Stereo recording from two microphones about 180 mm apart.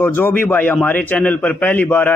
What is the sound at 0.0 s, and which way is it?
A man's voice, 10° left (ahead or behind).